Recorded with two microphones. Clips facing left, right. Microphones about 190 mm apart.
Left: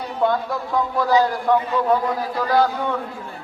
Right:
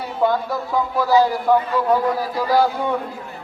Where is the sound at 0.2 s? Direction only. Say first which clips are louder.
Right 1 dB; 5° right (ahead or behind).